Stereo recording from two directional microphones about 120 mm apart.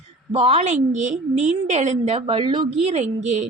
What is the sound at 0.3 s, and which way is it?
Speech, 60° right (ahead or behind).